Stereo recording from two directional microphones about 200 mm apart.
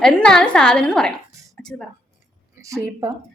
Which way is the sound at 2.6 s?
15° right (ahead or behind).